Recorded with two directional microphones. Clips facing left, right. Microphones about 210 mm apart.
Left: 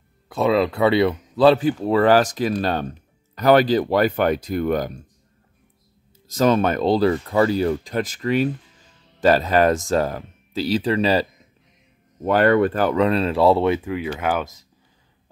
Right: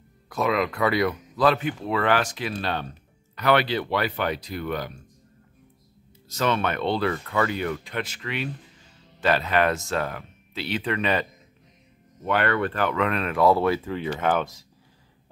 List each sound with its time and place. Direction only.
0.3 s speech: 30° left (ahead or behind); by 5.0 s 45° left (ahead or behind)
6.3 s speech: 40° left (ahead or behind)
12.3 s speech: 40° left (ahead or behind)
13.8 s speech: 10° left (ahead or behind)